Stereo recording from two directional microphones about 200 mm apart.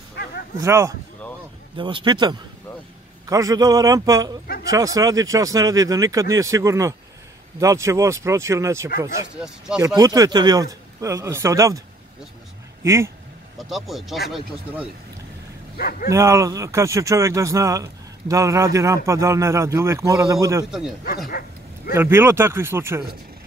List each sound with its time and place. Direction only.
0.1 s bow-wow: 55° left (ahead or behind)
0.6 s speech: 15° right (ahead or behind)
9.9 s speech: 20° right (ahead or behind)
12.8 s speech: 15° right (ahead or behind)
13.6 s speech: centre (ahead or behind)
15.8 s speech: 50° left (ahead or behind)
16.1 s speech: 15° right (ahead or behind)
21.3 s bow-wow: 50° left (ahead or behind)
21.9 s speech: 10° right (ahead or behind)